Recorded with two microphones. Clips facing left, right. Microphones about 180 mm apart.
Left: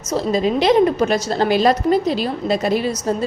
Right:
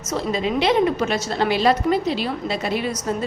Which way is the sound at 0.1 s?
40° left (ahead or behind).